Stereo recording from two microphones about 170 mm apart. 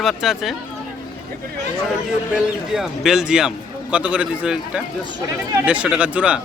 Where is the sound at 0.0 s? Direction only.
Centre (ahead or behind).